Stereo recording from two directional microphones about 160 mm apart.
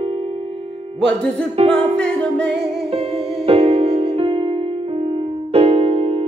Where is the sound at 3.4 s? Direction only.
40° right (ahead or behind).